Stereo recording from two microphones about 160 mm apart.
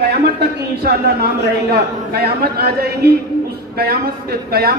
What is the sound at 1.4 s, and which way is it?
A man's voice, 80° right.